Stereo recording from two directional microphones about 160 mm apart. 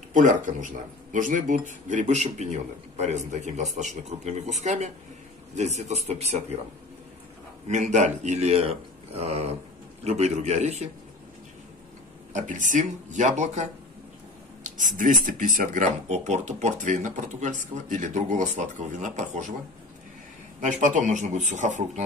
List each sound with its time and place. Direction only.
0.1 s a man's voice: 55° right (ahead or behind)
7.6 s a man's voice: 45° right (ahead or behind)
12.3 s a man's voice: 55° right (ahead or behind)
20.6 s a man's voice: 50° right (ahead or behind)